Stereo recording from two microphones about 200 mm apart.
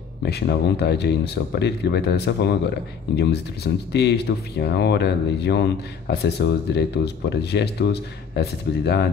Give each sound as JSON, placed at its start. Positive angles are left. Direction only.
{"t": 0.2, "sound": "speech", "side_deg": 55}